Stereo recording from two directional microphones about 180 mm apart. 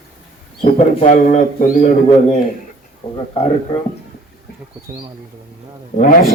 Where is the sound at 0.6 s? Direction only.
40° left (ahead or behind).